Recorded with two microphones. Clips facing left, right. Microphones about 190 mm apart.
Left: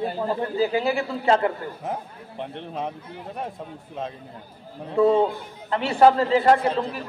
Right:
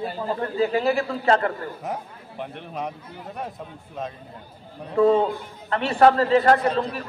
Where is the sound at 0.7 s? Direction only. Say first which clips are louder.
Right 1 dB; 20° left (ahead or behind).